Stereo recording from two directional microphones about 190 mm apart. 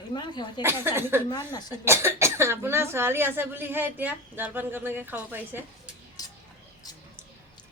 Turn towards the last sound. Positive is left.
turn(degrees=20)  # may be behind; listen again after turning